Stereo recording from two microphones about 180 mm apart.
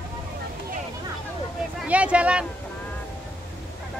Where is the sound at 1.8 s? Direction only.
5° right (ahead or behind).